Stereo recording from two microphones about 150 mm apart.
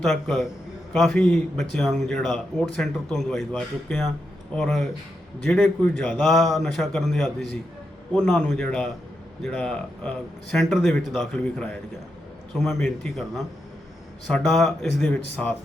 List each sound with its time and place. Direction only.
0.0 s speech: centre (ahead or behind)
11.3 s speech: 10° left (ahead or behind)